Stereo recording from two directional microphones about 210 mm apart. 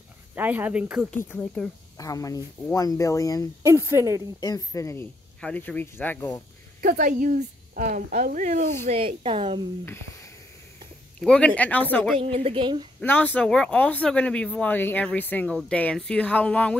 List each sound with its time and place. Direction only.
0.4 s speech: 10° right (ahead or behind)
1.1 s speech: 5° left (ahead or behind)
2.0 s speech: 15° left (ahead or behind)
3.6 s speech: 10° right (ahead or behind)
4.4 s speech: 15° left (ahead or behind)
6.8 s speech: 40° right (ahead or behind)
9.8 s speech: 10° left (ahead or behind)
12.2 s a woman's voice: 30° right (ahead or behind)
13.0 s speech: 10° left (ahead or behind)